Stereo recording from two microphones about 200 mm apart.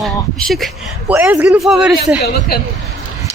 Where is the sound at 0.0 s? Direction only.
Centre (ahead or behind).